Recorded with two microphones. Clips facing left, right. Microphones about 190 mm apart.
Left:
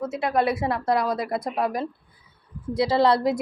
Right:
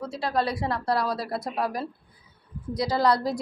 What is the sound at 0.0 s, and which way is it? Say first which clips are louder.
A woman's voice: left 4 dB; 20° left (ahead or behind).